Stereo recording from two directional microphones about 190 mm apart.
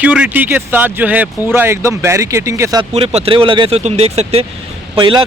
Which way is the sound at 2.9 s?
35° right (ahead or behind).